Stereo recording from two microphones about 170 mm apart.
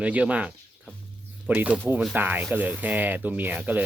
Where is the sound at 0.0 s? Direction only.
10° right (ahead or behind).